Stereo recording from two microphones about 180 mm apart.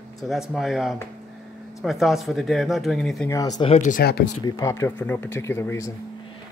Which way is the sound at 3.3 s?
20° left (ahead or behind).